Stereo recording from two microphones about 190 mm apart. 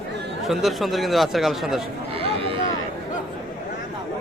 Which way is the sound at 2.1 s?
30° right (ahead or behind).